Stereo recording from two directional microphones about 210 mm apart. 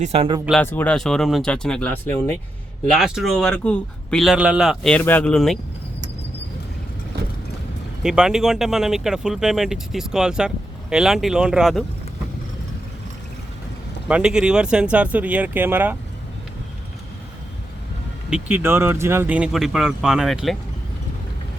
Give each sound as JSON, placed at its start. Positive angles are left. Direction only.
{"t": 0.0, "sound": "speech", "side_deg": -30}
{"t": 0.6, "sound": "speech", "side_deg": 10}
{"t": 8.0, "sound": "speech", "side_deg": -5}
{"t": 14.1, "sound": "speech", "side_deg": -5}
{"t": 18.3, "sound": "speech", "side_deg": -5}